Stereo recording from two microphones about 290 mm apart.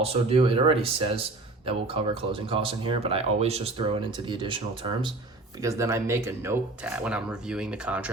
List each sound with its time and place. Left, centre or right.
0.0 s speech: centre